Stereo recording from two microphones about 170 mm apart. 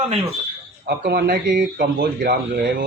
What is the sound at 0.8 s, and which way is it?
Speech, 65° right (ahead or behind).